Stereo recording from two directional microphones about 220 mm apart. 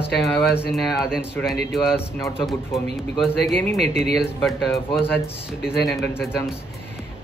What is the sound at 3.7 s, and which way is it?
Speech, 30° right (ahead or behind).